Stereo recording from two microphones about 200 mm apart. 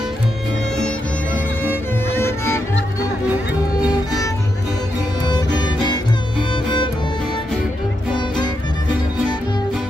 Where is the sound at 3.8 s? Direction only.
20° left (ahead or behind).